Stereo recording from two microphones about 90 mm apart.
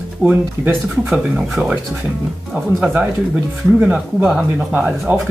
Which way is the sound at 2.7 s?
15° right (ahead or behind).